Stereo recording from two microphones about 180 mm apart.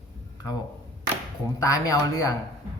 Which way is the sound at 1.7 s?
20° left (ahead or behind).